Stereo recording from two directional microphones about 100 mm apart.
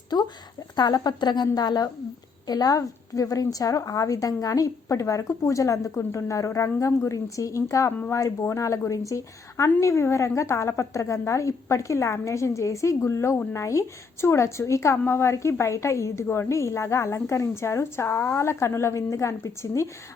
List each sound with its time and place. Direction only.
0.1 s a woman's voice: 45° left (ahead or behind); by 19.9 s 30° left (ahead or behind)